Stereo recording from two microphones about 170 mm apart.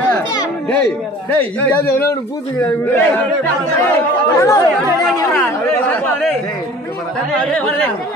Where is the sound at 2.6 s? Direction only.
15° left (ahead or behind).